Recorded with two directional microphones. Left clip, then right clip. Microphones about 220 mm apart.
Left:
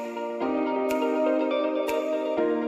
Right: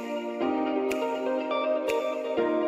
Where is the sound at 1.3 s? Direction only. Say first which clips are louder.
Left 3 dB; centre (ahead or behind).